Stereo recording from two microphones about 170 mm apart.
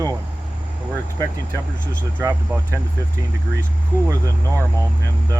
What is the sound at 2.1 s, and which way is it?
Speech, 10° right (ahead or behind).